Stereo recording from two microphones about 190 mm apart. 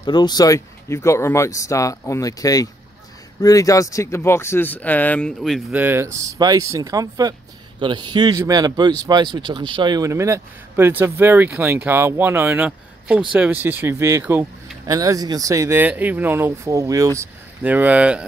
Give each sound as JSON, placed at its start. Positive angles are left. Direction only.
{"t": 0.0, "sound": "speech", "side_deg": 20}
{"t": 5.8, "sound": "speech", "side_deg": -10}